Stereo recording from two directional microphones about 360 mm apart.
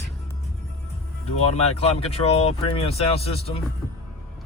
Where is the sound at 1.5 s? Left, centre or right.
Centre.